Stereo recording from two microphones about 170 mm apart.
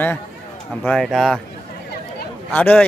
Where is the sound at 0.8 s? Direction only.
Centre (ahead or behind).